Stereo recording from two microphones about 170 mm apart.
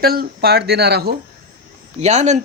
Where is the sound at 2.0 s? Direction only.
40° right (ahead or behind).